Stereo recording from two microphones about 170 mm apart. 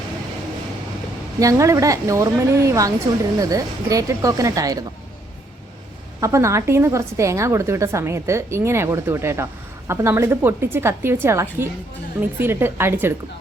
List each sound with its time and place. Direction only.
1.4 s speech: 20° right (ahead or behind)
6.1 s a woman's voice: 20° right (ahead or behind)